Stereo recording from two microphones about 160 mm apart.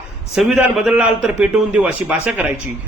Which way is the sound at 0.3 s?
5° right (ahead or behind).